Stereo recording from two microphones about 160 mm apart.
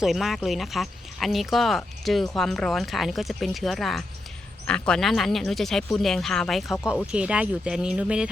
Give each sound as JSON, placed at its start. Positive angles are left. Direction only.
{"t": 0.0, "sound": "speech", "side_deg": 0}